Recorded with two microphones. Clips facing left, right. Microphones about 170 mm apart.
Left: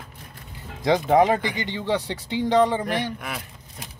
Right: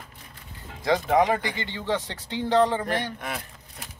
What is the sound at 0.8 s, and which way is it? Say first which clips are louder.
Speech: left 3 dB; 20° left (ahead or behind).